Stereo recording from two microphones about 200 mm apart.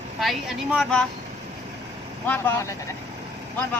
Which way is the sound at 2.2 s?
10° left (ahead or behind).